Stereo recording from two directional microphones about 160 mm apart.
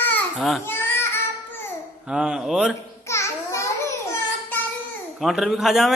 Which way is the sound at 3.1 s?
15° left (ahead or behind).